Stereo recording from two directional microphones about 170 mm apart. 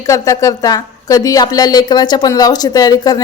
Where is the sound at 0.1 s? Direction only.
20° left (ahead or behind).